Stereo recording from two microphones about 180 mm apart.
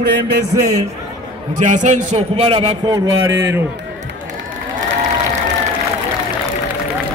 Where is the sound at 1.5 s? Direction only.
45° right (ahead or behind); by 3.6 s 15° right (ahead or behind).